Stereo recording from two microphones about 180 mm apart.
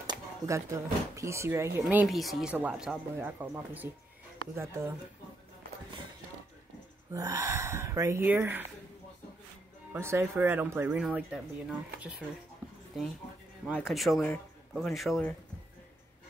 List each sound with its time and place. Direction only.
0.0 s speech: 20° right (ahead or behind)
7.1 s speech: 20° right (ahead or behind)
9.9 s speech: 15° right (ahead or behind)
13.8 s speech: centre (ahead or behind)